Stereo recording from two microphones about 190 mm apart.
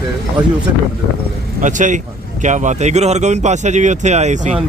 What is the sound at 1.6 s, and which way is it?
Speech, 40° right (ahead or behind).